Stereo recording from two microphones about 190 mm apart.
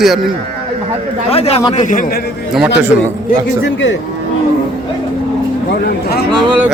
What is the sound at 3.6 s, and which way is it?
Speech, 75° left (ahead or behind).